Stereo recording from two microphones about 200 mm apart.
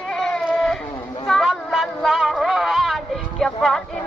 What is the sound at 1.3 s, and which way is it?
Music, centre (ahead or behind).